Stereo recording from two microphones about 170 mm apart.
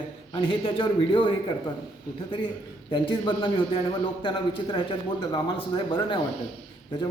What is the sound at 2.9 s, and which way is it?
Speech, 30° left (ahead or behind).